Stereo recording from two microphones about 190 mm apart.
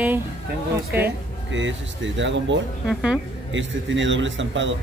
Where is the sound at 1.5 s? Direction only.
75° right (ahead or behind).